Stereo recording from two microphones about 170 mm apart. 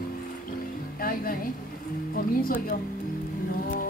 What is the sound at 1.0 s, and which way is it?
Music, 55° left (ahead or behind).